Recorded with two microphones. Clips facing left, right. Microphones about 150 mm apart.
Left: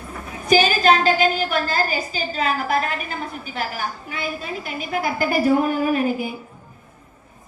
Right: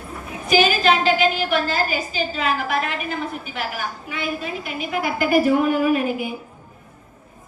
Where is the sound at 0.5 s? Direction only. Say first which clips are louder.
Left 1 dB; 40° left (ahead or behind).